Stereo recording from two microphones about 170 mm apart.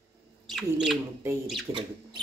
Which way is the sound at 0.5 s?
Centre (ahead or behind).